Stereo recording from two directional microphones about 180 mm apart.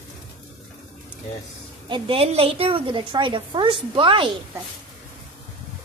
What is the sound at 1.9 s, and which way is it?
A woman's voice, 35° right (ahead or behind).